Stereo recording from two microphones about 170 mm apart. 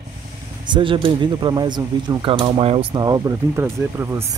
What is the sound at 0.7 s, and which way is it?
Speech, 30° right (ahead or behind).